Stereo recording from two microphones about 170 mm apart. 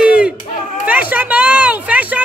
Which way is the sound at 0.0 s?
5° right (ahead or behind).